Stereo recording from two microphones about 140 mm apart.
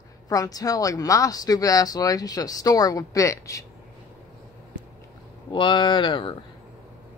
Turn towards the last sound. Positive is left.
turn(degrees=35)  # may be behind; listen again after turning